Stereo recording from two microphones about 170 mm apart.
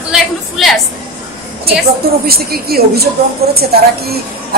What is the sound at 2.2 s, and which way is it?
A woman's voice, 65° right (ahead or behind).